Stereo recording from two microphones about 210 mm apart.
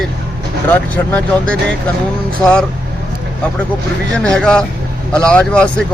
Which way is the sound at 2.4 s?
5° left (ahead or behind).